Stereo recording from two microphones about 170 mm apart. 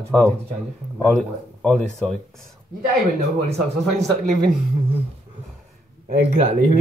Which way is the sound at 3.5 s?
40° right (ahead or behind).